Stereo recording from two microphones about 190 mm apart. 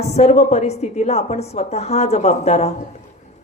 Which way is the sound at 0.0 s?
35° left (ahead or behind).